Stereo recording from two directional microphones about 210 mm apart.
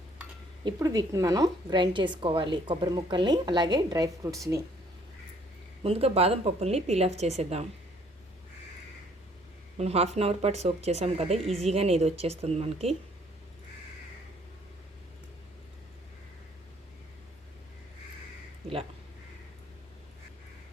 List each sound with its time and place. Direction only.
0.6 s a woman's voice: 15° right (ahead or behind)
5.8 s a woman's voice: 30° right (ahead or behind)
9.7 s a woman's voice: 30° right (ahead or behind)